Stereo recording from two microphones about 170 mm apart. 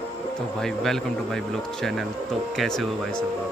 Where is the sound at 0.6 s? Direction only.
Centre (ahead or behind).